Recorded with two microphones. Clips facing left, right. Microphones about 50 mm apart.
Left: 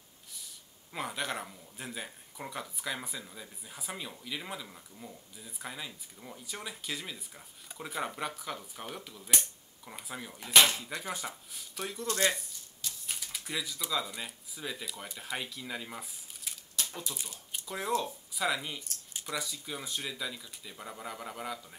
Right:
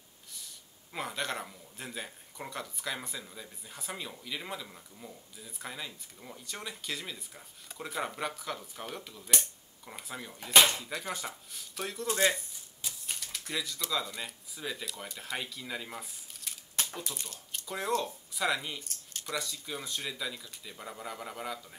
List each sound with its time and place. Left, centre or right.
0.9 s speech: centre
16.8 s typewriter: right
17.1 s speech: centre